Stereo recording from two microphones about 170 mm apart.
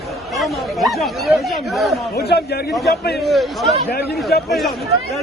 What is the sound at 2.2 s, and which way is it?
A man's voice, 70° left (ahead or behind).